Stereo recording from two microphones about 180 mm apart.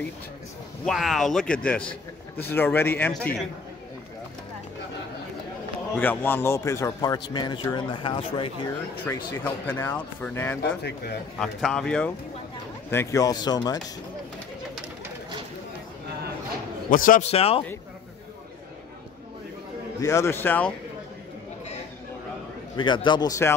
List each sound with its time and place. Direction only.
0.8 s speech: centre (ahead or behind)
5.9 s a man's voice: 10° left (ahead or behind); by 8.5 s 30° left (ahead or behind)
9.0 s speech: 15° left (ahead or behind)
10.6 s speech: 65° left (ahead or behind)
11.3 s speech: centre (ahead or behind)
12.9 s a man's voice: 15° left (ahead or behind)
16.9 s a man's voice: 50° left (ahead or behind)
17.3 s speech: 35° left (ahead or behind)
20.0 s speech: 15° left (ahead or behind)
22.8 s a man's voice: 25° left (ahead or behind)